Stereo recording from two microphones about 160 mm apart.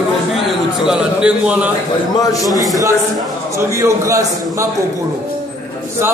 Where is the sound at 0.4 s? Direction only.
5° right (ahead or behind).